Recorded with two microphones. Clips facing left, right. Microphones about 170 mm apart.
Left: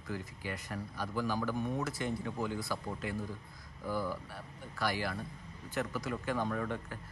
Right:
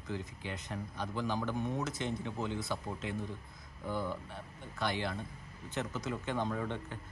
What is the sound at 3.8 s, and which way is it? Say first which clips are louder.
Speech: left 1 dB; 20° right (ahead or behind).